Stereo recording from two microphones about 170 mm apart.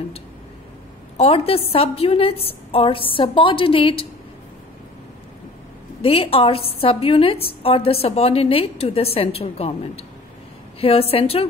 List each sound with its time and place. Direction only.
1.1 s a woman's voice: 35° left (ahead or behind)
6.0 s a woman's voice: 35° left (ahead or behind)